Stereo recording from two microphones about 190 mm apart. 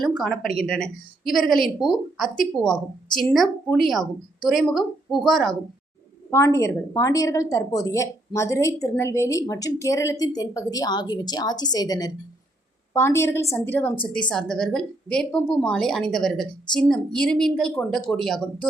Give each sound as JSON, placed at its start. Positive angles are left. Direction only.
{"t": 0.0, "sound": "speech", "side_deg": 0}
{"t": 6.3, "sound": "a woman's voice", "side_deg": 15}